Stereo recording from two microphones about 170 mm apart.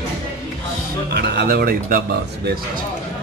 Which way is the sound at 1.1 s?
75° right (ahead or behind).